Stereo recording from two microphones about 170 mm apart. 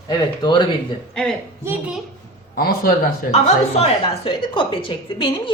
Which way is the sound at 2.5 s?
60° left (ahead or behind).